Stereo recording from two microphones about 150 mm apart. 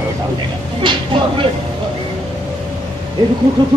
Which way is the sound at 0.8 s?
30° right (ahead or behind).